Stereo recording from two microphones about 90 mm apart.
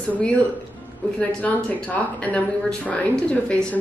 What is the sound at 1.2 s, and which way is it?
Speech, 20° left (ahead or behind).